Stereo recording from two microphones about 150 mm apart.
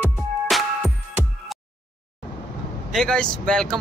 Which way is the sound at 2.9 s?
5° left (ahead or behind).